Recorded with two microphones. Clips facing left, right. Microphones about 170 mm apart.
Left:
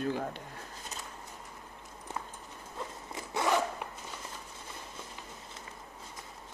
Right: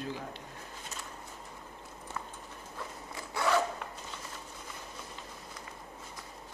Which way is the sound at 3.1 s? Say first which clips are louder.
Left 1 dB; 20° left (ahead or behind).